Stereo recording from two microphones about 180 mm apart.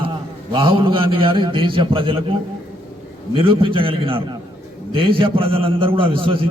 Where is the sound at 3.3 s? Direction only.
25° right (ahead or behind).